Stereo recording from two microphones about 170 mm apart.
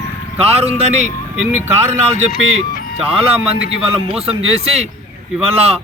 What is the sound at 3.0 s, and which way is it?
Speech, 35° right (ahead or behind).